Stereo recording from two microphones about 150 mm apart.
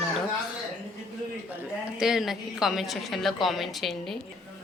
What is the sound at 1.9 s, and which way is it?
A woman's voice, 5° right (ahead or behind).